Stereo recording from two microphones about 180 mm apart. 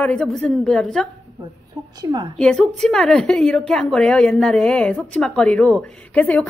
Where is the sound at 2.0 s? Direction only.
20° right (ahead or behind).